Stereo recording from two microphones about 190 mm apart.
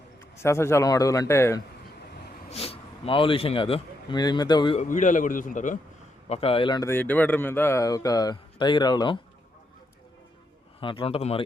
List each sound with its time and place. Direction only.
0.4 s a man's voice: 15° left (ahead or behind)
2.5 s a man's voice: 30° left (ahead or behind)
4.8 s a man's voice: 40° left (ahead or behind)
6.2 s speech: 30° left (ahead or behind)
10.8 s speech: 25° left (ahead or behind)